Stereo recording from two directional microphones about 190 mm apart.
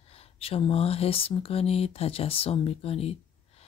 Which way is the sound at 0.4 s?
30° left (ahead or behind).